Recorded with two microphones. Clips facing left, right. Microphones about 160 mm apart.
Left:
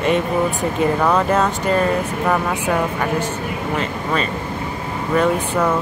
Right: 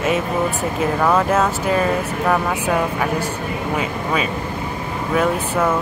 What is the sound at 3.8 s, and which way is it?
Vehicle, 5° right (ahead or behind).